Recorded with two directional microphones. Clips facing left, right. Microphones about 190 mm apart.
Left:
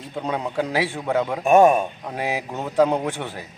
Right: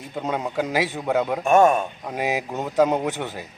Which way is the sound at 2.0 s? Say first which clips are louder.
Right 1 dB; 10° right (ahead or behind).